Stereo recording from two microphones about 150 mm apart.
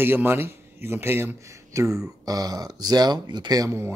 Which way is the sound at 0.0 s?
15° right (ahead or behind).